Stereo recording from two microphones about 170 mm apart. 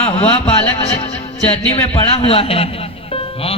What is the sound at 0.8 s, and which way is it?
Music, 35° left (ahead or behind).